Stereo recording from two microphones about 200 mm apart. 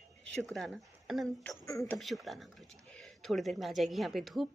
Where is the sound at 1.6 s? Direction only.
15° left (ahead or behind).